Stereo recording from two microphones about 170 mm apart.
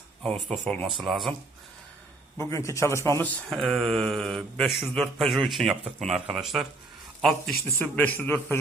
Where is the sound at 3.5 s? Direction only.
Centre (ahead or behind).